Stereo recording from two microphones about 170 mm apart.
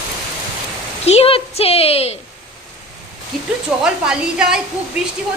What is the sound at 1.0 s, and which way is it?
A woman's voice, 40° left (ahead or behind).